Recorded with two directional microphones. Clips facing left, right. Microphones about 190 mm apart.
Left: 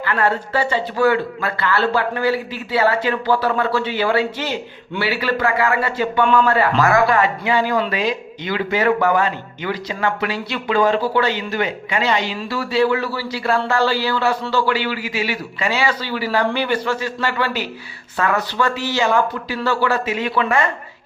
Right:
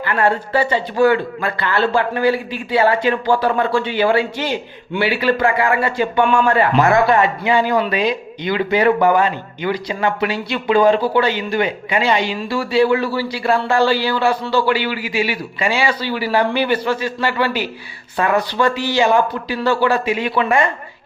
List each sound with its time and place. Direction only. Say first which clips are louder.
1.5 s a man's voice: right 1 dB; 20° right (ahead or behind)